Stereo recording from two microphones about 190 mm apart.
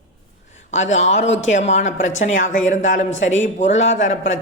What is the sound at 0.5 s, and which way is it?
A man's voice, 40° left (ahead or behind).